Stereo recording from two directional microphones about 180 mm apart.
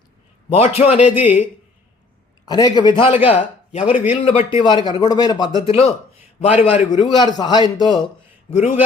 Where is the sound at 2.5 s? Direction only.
20° left (ahead or behind).